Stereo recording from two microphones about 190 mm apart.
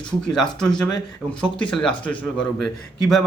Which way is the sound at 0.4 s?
5° left (ahead or behind).